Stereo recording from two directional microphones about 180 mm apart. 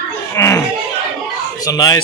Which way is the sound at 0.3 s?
15° left (ahead or behind).